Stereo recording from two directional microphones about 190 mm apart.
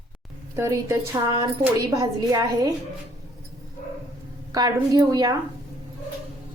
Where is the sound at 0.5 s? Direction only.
15° right (ahead or behind).